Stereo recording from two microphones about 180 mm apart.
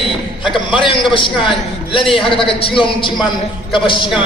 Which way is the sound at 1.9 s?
30° left (ahead or behind).